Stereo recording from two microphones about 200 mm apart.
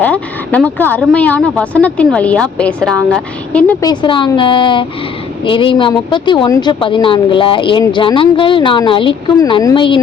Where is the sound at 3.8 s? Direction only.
20° left (ahead or behind).